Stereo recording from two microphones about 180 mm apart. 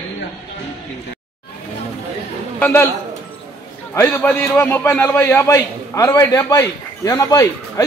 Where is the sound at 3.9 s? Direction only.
15° left (ahead or behind).